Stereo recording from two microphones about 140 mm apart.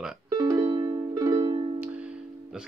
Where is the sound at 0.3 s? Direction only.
30° right (ahead or behind).